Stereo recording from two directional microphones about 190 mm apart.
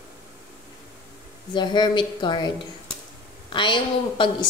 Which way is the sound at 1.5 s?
25° left (ahead or behind).